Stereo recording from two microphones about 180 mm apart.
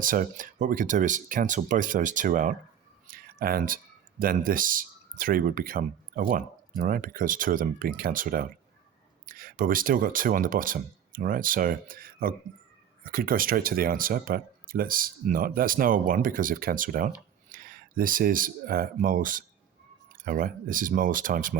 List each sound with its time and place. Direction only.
0.0 s speech: 50° right (ahead or behind)